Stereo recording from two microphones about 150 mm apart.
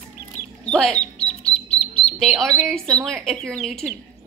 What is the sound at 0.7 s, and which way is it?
Speech, 5° left (ahead or behind).